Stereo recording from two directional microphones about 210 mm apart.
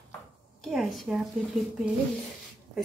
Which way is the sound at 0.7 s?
Centre (ahead or behind).